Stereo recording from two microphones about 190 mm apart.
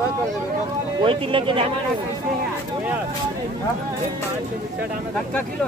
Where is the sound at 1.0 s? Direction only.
30° right (ahead or behind).